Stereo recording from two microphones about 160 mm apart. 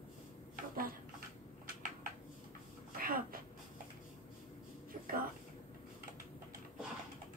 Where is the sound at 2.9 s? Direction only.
65° right (ahead or behind).